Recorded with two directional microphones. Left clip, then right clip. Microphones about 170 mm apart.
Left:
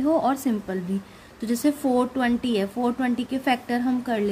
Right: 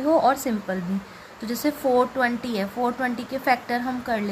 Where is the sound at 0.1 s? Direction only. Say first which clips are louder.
Right 5 dB; 25° left (ahead or behind).